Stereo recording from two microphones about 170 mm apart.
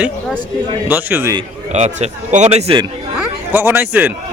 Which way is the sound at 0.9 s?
10° right (ahead or behind).